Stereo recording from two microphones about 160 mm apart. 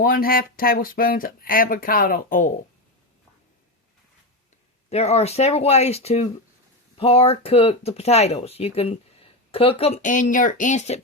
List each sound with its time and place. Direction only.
0.0 s speech: 65° left (ahead or behind)
4.9 s speech: 40° left (ahead or behind)